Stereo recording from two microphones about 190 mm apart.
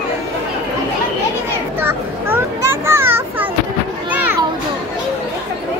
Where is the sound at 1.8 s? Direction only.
10° right (ahead or behind).